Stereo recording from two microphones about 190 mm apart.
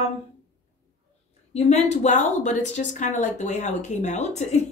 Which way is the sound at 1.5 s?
35° left (ahead or behind).